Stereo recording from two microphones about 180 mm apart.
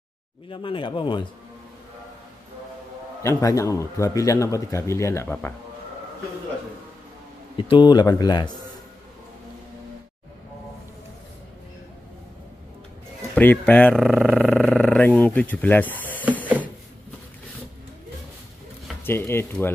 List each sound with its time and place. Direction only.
0.5 s a man's voice: 30° left (ahead or behind)
3.2 s speech: 15° left (ahead or behind)
7.5 s a man's voice: 30° left (ahead or behind)
13.3 s speech: 10° left (ahead or behind)
19.0 s speech: 15° left (ahead or behind)